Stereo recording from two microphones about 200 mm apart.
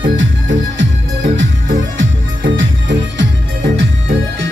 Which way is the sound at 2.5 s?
65° right (ahead or behind).